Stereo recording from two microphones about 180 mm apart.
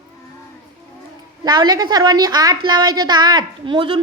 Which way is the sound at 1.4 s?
25° right (ahead or behind).